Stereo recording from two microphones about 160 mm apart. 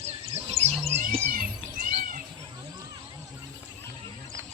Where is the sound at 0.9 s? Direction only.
45° right (ahead or behind); by 2.2 s 60° right (ahead or behind).